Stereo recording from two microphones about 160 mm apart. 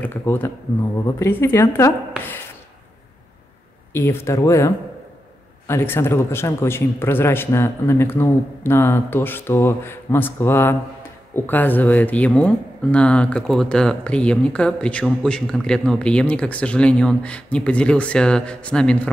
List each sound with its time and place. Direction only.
0.0 s a man's voice: 15° left (ahead or behind)
3.9 s a man's voice: 15° left (ahead or behind)